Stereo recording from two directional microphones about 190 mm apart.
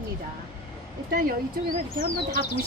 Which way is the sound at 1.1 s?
50° right (ahead or behind).